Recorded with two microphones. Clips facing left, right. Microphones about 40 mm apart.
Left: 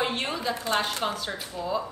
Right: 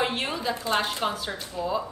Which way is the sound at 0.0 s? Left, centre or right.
Centre.